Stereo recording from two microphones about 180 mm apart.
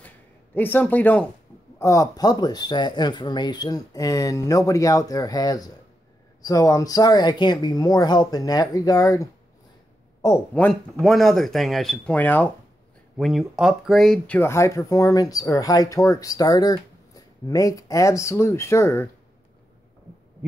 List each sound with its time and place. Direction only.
0.6 s a man's voice: 10° left (ahead or behind)
13.2 s speech: centre (ahead or behind); by 19.0 s 15° left (ahead or behind)